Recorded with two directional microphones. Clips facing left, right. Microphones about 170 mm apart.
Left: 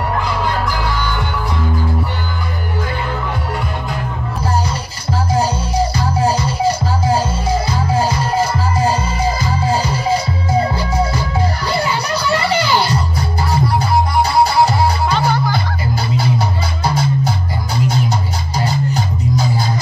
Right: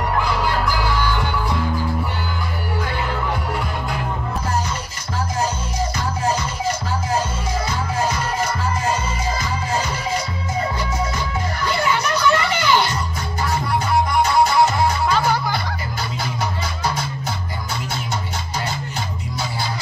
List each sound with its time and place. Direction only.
5.4 s music: 35° left (ahead or behind)
11.6 s music: 35° left (ahead or behind)
16.8 s music: 30° left (ahead or behind)
18.6 s music: 40° left (ahead or behind)